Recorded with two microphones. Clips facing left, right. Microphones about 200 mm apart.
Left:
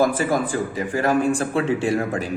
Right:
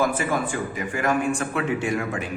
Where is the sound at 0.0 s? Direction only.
35° left (ahead or behind).